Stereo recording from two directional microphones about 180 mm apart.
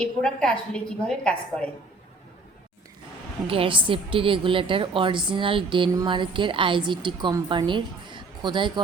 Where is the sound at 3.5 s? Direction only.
30° right (ahead or behind).